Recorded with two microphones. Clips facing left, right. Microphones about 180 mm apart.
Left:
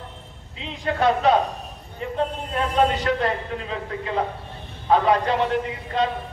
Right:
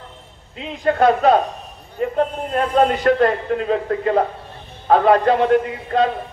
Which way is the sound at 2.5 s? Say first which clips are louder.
Right 4 dB; 50° right (ahead or behind).